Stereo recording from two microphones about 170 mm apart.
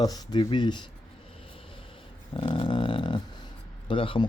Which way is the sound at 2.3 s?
25° left (ahead or behind).